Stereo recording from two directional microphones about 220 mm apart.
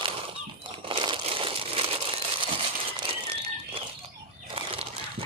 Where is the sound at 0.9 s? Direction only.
20° right (ahead or behind).